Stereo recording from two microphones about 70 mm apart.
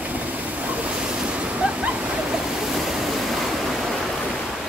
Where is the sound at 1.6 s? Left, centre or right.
Centre.